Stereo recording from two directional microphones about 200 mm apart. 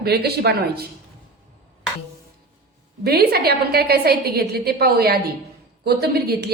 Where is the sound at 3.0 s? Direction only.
50° right (ahead or behind).